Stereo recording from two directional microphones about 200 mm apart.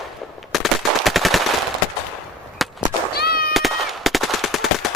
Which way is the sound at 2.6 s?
Centre (ahead or behind).